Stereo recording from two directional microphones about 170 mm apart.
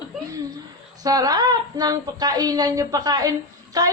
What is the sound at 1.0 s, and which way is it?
Speech, 20° right (ahead or behind).